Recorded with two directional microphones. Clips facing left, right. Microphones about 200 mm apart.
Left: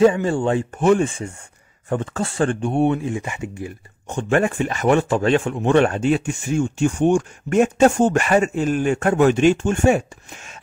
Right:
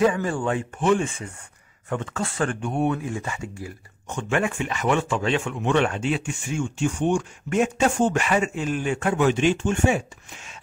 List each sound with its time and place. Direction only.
0.0 s speech: 25° left (ahead or behind)
0.7 s speech: 45° left (ahead or behind); by 3.7 s 20° left (ahead or behind)
4.1 s speech: 35° left (ahead or behind)